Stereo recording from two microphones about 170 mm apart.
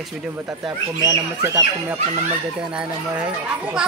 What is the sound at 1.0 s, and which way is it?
Speech, 20° right (ahead or behind).